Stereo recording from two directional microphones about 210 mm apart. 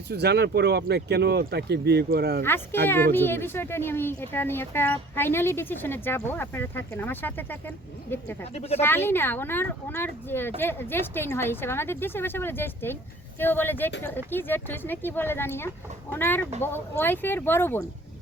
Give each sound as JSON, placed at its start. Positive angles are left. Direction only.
{"t": 0.1, "sound": "speech", "side_deg": -50}
{"t": 2.8, "sound": "speech", "side_deg": 10}
{"t": 8.5, "sound": "speech", "side_deg": 30}
{"t": 8.8, "sound": "speech", "side_deg": 10}